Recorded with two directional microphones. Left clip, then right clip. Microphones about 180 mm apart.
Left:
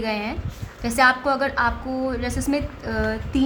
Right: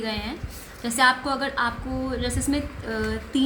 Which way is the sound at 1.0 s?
40° left (ahead or behind).